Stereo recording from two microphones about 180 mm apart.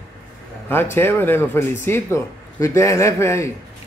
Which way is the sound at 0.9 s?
10° left (ahead or behind).